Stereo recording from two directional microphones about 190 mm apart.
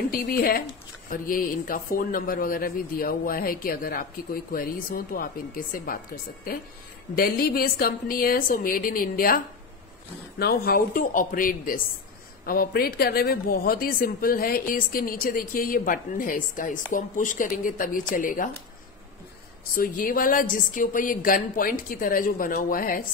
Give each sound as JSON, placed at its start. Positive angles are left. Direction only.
{"t": 0.1, "sound": "a man's voice", "side_deg": 50}
{"t": 7.2, "sound": "a man's voice", "side_deg": 55}
{"t": 10.4, "sound": "a man's voice", "side_deg": 55}
{"t": 19.7, "sound": "a man's voice", "side_deg": 45}